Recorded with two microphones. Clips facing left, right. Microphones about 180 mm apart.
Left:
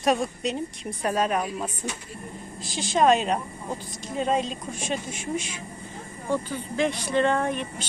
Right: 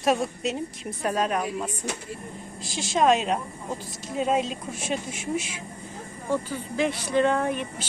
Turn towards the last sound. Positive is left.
turn(degrees=-5)  # may be behind; listen again after turning